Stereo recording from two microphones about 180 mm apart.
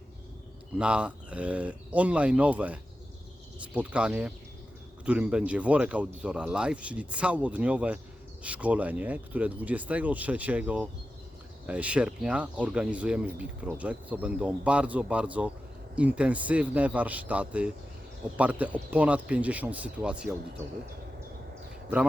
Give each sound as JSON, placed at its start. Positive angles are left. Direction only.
{"t": 0.8, "sound": "speech", "side_deg": -5}